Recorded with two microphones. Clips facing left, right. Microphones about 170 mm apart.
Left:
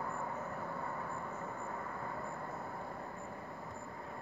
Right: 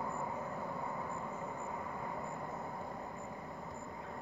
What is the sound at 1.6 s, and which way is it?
Vehicle, 15° right (ahead or behind).